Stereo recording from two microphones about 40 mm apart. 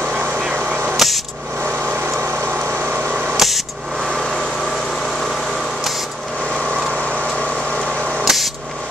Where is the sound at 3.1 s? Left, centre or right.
Right.